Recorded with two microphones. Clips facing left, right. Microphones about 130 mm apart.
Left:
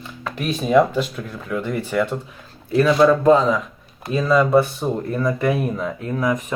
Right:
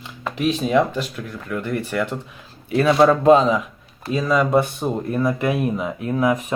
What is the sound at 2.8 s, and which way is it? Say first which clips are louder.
Speech: left 1 dB; 25° right (ahead or behind).